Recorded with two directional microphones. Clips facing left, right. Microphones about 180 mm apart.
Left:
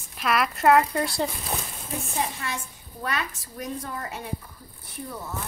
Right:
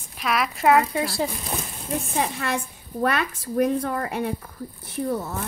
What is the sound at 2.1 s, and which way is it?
A woman's voice, 60° right (ahead or behind).